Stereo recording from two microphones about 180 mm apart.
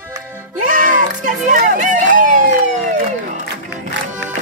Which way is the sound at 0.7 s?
50° right (ahead or behind).